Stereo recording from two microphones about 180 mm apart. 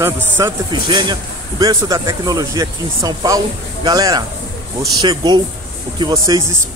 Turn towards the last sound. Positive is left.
turn(degrees=-15)  # may be behind; listen again after turning